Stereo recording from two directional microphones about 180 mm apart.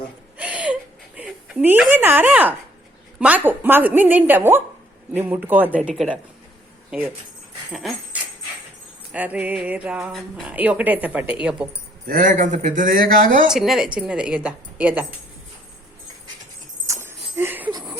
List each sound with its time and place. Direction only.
0.3 s a sound: 5° right (ahead or behind)
3.2 s speech: 10° right (ahead or behind)
7.7 s dog: centre (ahead or behind)
9.1 s speech: 10° right (ahead or behind)
12.0 s speech: 50° right (ahead or behind)
13.5 s a woman's voice: centre (ahead or behind)
16.8 s dog: 15° right (ahead or behind)
17.3 s a sound: 10° right (ahead or behind)